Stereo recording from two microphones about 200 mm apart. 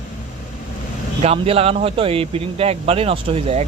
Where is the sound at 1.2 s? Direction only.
30° right (ahead or behind).